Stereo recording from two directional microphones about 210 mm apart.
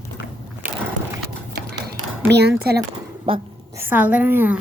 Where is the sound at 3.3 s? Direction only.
25° right (ahead or behind).